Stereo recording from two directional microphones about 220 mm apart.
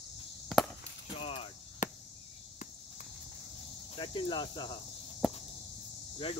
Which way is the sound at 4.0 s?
20° left (ahead or behind).